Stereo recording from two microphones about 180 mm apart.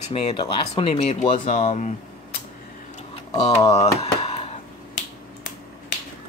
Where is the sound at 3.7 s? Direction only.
35° left (ahead or behind).